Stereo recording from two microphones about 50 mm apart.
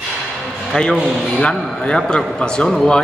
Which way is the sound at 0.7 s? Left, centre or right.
Centre.